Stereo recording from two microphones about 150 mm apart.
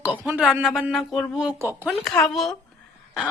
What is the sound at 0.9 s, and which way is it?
Speech, centre (ahead or behind).